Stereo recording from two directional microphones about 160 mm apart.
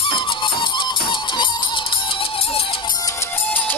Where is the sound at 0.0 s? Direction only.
30° left (ahead or behind).